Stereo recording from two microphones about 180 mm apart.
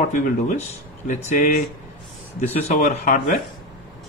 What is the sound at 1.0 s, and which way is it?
Speech, 40° left (ahead or behind).